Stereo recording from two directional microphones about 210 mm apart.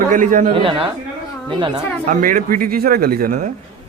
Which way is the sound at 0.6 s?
25° right (ahead or behind).